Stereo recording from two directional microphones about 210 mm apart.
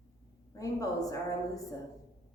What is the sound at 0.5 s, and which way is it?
Speech, 15° left (ahead or behind).